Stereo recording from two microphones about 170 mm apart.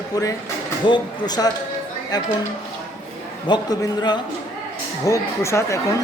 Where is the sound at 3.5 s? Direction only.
25° left (ahead or behind).